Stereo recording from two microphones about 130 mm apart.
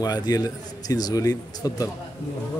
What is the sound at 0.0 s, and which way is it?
A man's voice, 30° left (ahead or behind).